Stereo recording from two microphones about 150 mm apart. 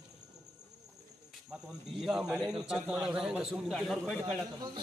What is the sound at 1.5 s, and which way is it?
A man's voice, 5° right (ahead or behind).